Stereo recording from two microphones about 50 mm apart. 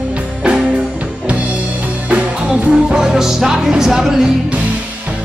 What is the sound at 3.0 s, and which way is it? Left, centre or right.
Music, centre.